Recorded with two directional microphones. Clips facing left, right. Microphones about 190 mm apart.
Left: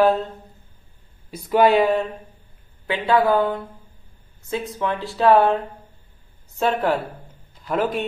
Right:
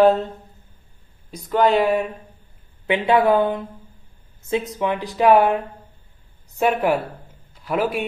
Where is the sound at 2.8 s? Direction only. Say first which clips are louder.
Right 2 dB; 20° right (ahead or behind).